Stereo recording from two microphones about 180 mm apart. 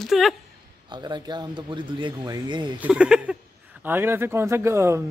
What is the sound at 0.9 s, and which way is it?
Speech, 25° right (ahead or behind).